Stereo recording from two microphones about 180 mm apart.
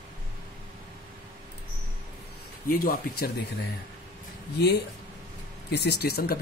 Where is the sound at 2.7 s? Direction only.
55° left (ahead or behind).